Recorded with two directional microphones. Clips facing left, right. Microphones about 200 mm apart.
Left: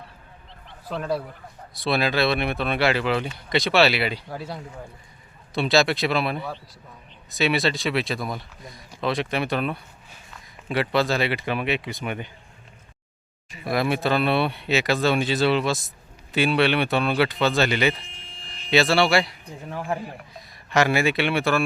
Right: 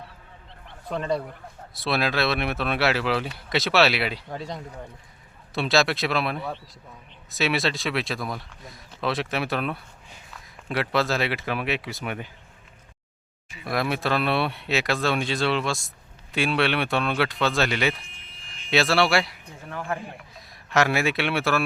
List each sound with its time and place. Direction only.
0.9 s speech: 5° left (ahead or behind)
13.7 s speech: centre (ahead or behind)
18.2 s a sound: 30° left (ahead or behind)
18.7 s speech: centre (ahead or behind)